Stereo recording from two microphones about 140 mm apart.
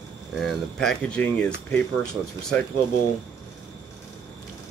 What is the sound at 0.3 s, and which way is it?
Speech, centre (ahead or behind).